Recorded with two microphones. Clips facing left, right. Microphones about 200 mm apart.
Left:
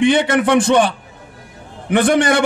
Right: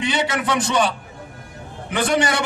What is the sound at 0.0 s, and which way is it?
A man's voice, 55° left (ahead or behind).